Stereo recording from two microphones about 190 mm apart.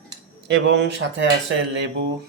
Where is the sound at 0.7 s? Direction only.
70° right (ahead or behind).